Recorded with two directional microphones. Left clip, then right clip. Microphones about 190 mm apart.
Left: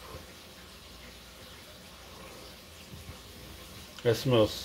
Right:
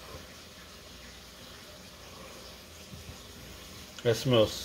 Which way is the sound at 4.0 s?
20° left (ahead or behind).